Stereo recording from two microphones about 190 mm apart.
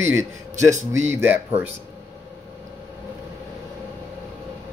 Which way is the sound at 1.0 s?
10° right (ahead or behind).